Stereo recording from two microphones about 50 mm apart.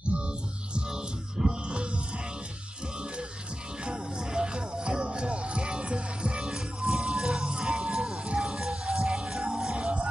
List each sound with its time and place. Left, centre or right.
0.1 s music: right
3.8 s music: centre
9.8 s music: right